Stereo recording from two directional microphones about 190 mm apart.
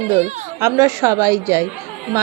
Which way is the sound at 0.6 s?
15° right (ahead or behind).